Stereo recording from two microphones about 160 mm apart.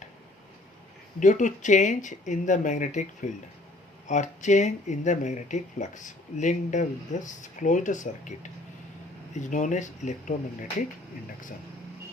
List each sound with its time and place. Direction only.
1.2 s speech: 50° left (ahead or behind)
9.3 s speech: 50° left (ahead or behind)